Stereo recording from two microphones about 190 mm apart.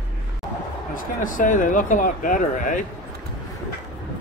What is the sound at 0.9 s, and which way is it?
Speech, 45° left (ahead or behind).